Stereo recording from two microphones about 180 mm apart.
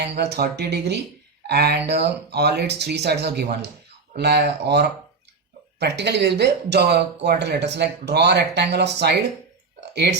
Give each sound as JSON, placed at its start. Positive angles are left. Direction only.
{"t": 0.2, "sound": "speech", "side_deg": -65}